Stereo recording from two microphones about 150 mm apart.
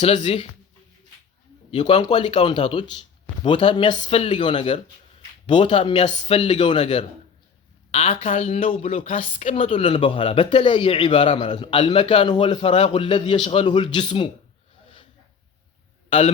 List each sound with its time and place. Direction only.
0.0 s a woman's voice: 45° left (ahead or behind)
1.7 s a woman's voice: 35° left (ahead or behind)
9.1 s speech: 55° left (ahead or behind)
9.6 s speech: 40° left (ahead or behind)
16.0 s a man's voice: 40° left (ahead or behind)